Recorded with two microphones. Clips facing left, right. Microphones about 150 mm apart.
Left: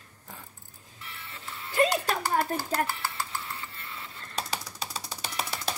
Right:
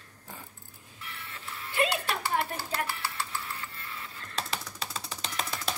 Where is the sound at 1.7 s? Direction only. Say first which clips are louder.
Left 4 dB; 40° left (ahead or behind).